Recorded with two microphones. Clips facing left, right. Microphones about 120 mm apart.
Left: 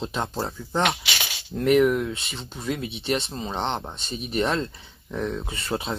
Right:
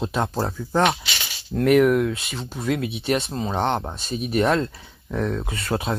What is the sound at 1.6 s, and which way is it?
Speech, centre (ahead or behind).